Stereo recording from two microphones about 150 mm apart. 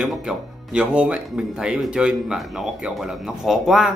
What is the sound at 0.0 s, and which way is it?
Speech, centre (ahead or behind).